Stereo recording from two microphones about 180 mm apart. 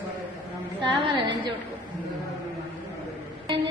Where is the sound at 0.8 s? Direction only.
25° right (ahead or behind).